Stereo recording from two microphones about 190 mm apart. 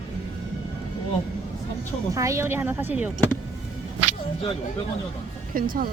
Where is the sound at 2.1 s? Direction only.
15° right (ahead or behind).